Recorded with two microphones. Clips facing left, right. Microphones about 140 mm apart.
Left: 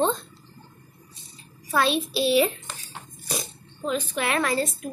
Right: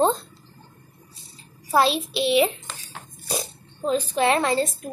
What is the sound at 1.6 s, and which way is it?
Speech, 30° right (ahead or behind).